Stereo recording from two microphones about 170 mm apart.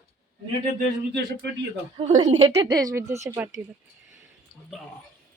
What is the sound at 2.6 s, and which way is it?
Speech, 25° right (ahead or behind).